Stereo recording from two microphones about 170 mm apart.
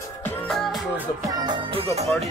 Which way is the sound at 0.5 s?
Centre (ahead or behind).